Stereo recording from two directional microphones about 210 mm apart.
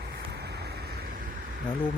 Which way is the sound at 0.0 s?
50° right (ahead or behind).